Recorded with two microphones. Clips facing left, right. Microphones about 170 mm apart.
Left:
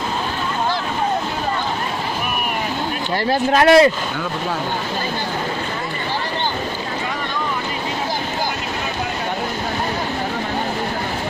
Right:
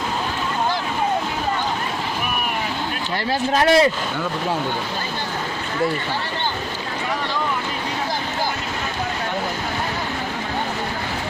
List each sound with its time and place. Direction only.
3.5 s speech: 70° left (ahead or behind)